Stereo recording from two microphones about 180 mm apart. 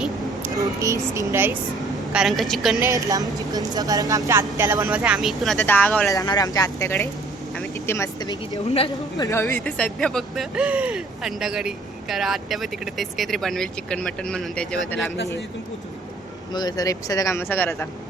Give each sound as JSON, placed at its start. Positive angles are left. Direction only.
{"t": 0.5, "sound": "speech", "side_deg": -20}
{"t": 2.1, "sound": "speech", "side_deg": 0}
{"t": 2.9, "sound": "a woman's voice", "side_deg": -20}
{"t": 6.1, "sound": "speech", "side_deg": 20}
{"t": 9.2, "sound": "speech", "side_deg": 15}
{"t": 16.5, "sound": "speech", "side_deg": 20}